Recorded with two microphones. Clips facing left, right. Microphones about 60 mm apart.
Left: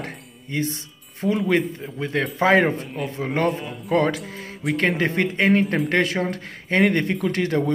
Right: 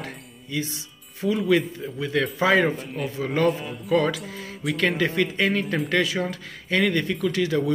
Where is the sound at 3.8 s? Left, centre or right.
Left.